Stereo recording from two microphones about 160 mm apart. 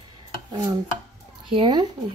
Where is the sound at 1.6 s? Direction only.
30° right (ahead or behind).